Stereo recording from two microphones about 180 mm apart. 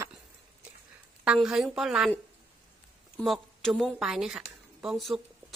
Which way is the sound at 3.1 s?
Centre (ahead or behind).